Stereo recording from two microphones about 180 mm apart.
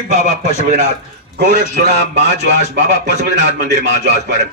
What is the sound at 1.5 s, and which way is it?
Speech, 70° right (ahead or behind).